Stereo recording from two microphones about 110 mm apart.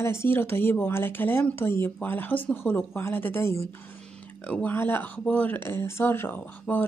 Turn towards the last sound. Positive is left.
turn(degrees=15)  # may be behind; listen again after turning